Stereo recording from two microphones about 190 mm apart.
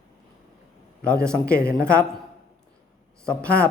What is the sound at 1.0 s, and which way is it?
Speech, 5° left (ahead or behind).